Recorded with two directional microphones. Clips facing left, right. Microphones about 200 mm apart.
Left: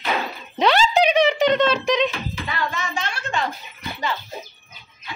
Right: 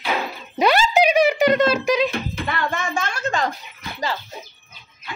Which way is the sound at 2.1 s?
55° right (ahead or behind).